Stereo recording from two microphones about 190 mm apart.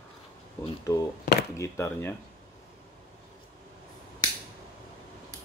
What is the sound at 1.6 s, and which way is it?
Speech, 15° left (ahead or behind).